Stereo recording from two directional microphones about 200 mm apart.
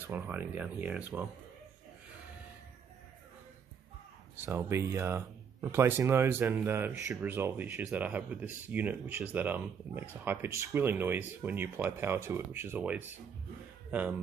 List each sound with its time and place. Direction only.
0.0 s speech: 10° right (ahead or behind)
4.4 s speech: 15° right (ahead or behind)